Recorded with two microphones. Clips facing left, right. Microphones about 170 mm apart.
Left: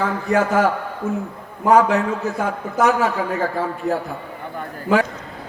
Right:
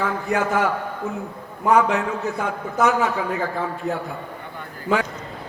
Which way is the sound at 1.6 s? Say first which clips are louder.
Left 3 dB; 40° left (ahead or behind).